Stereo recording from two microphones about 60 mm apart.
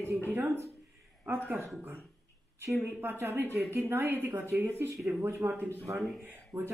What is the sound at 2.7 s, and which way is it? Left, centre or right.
Speech, right.